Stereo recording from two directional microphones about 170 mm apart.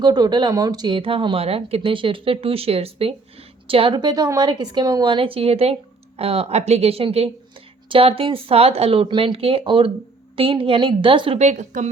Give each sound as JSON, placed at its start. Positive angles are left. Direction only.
{"t": 0.0, "sound": "speech", "side_deg": -25}